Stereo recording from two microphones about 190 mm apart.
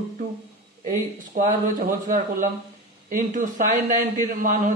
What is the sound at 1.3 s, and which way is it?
A man's voice, 45° right (ahead or behind).